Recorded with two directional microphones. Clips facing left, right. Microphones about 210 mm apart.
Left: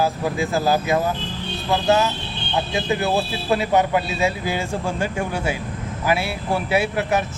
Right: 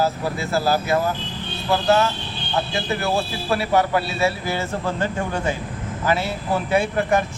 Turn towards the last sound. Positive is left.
turn(degrees=5)  # may be behind; listen again after turning